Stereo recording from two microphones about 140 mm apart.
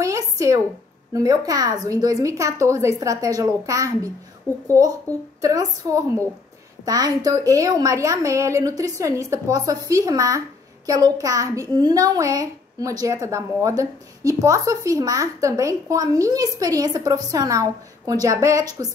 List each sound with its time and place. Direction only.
0.0 s a sound: 20° right (ahead or behind)
1.1 s a child's voice: 25° right (ahead or behind)
4.5 s speech: 10° left (ahead or behind)
5.4 s a child's voice: 25° right (ahead or behind)